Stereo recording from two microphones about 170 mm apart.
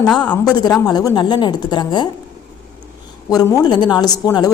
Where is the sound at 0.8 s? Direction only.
20° left (ahead or behind).